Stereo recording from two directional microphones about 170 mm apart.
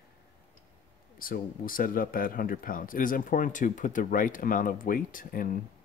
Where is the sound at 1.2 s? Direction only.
55° left (ahead or behind).